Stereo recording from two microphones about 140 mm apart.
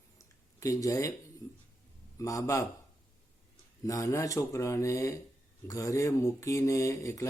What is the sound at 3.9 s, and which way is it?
Speech, 20° left (ahead or behind).